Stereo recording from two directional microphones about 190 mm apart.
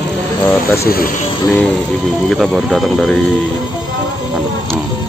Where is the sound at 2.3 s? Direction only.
Centre (ahead or behind).